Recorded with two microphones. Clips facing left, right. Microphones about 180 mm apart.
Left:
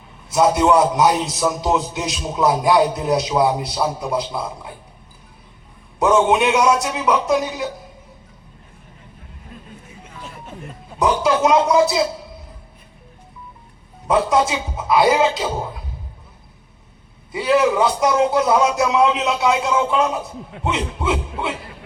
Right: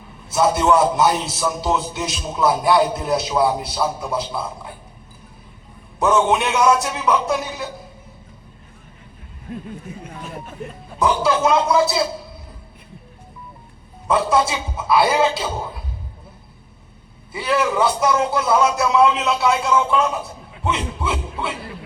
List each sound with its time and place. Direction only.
0.3 s a man's voice: 15° left (ahead or behind)
6.0 s a man's voice: 15° left (ahead or behind)
11.0 s a man's voice: 15° left (ahead or behind)
14.1 s a man's voice: 15° left (ahead or behind)
17.3 s a man's voice: 15° left (ahead or behind)
20.7 s a sound: 20° left (ahead or behind)